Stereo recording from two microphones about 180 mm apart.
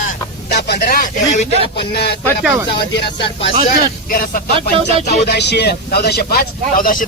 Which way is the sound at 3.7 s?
50° left (ahead or behind).